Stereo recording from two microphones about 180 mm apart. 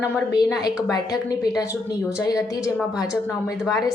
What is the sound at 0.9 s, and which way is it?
A woman's voice, 20° left (ahead or behind).